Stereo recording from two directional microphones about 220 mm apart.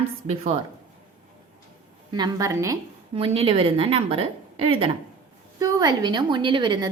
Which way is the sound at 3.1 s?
25° right (ahead or behind).